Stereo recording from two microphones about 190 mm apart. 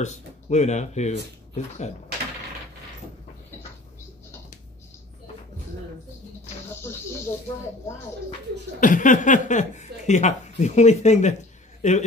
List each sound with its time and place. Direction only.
0.0 s speech: 35° left (ahead or behind)
6.8 s snake: 15° left (ahead or behind)
8.7 s speech: 45° left (ahead or behind)